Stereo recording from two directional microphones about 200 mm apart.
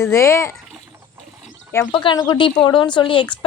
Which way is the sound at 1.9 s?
20° left (ahead or behind).